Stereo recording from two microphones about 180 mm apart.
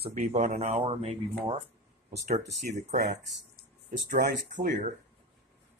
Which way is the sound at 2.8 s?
40° right (ahead or behind).